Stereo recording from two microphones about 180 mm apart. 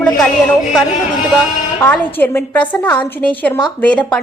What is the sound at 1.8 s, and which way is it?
A woman's voice, 10° left (ahead or behind).